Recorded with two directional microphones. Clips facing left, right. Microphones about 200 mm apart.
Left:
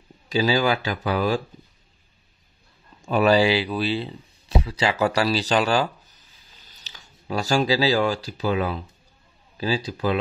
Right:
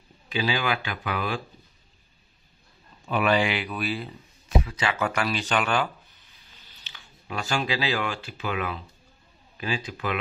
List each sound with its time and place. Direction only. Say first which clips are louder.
0.3 s speech: left 6 dB; 40° left (ahead or behind)
3.0 s speech: left 5 dB; 40° left (ahead or behind)